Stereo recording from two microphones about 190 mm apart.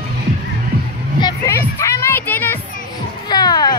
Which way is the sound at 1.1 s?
20° left (ahead or behind).